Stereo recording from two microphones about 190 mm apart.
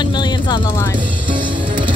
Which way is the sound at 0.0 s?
25° left (ahead or behind).